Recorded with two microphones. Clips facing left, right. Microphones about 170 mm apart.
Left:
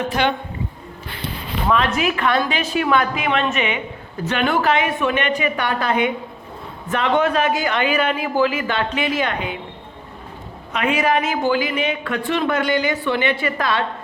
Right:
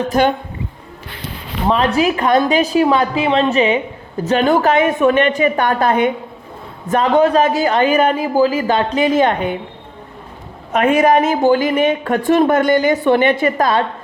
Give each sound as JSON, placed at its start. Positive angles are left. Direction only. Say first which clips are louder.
{"t": 0.0, "sound": "a woman's voice", "louder": "right 5 dB", "side_deg": -45}
{"t": 1.6, "sound": "a man's voice", "louder": "right 5 dB", "side_deg": -35}
{"t": 10.7, "sound": "a woman's voice", "louder": "right 7 dB", "side_deg": -45}